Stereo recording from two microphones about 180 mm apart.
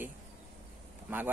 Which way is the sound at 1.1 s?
10° right (ahead or behind).